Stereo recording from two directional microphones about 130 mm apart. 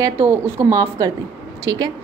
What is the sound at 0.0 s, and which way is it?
A woman's voice, 25° right (ahead or behind).